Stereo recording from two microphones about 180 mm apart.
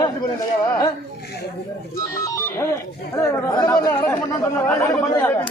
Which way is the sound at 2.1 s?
20° left (ahead or behind).